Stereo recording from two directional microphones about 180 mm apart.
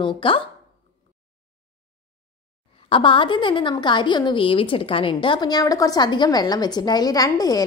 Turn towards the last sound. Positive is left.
turn(degrees=20)  # may be behind; listen again after turning